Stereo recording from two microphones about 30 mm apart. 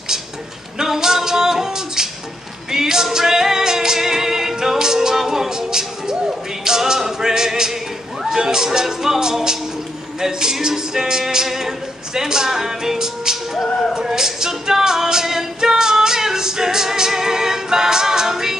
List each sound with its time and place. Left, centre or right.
0.7 s female singing: centre
2.7 s music: centre
6.6 s a capella: centre
8.3 s speech: right
10.2 s music: centre
13.7 s a sound: centre
13.9 s female singing: centre